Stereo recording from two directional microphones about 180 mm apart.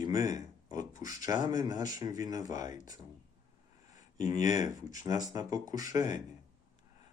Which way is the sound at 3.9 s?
20° right (ahead or behind).